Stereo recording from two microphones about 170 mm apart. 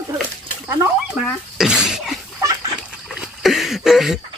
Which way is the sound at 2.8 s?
5° right (ahead or behind).